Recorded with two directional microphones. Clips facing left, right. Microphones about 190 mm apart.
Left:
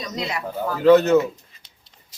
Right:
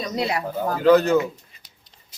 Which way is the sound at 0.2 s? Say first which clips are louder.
Right 4 dB; 35° right (ahead or behind).